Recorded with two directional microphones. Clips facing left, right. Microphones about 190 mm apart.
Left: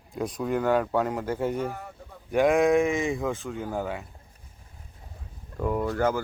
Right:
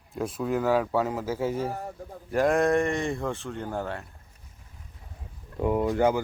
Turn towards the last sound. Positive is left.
turn(degrees=-15)  # may be behind; listen again after turning